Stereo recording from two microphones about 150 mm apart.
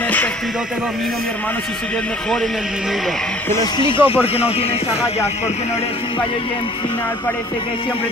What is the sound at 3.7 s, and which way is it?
Speech, 35° left (ahead or behind).